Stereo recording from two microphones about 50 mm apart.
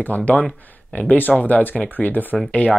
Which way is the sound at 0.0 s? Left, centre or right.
Left.